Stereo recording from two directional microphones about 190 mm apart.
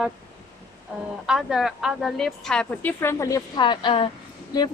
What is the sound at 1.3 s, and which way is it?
A woman's voice, centre (ahead or behind).